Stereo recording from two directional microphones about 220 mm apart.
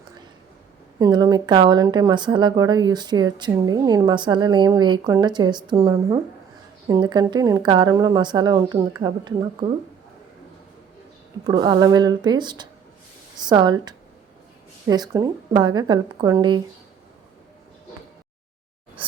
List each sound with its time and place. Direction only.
0.9 s speech: 15° right (ahead or behind)
11.4 s a woman's voice: 20° right (ahead or behind)
19.0 s music: 25° right (ahead or behind)